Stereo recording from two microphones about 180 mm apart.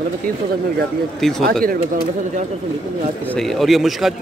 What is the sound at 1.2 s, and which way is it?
Speech, centre (ahead or behind).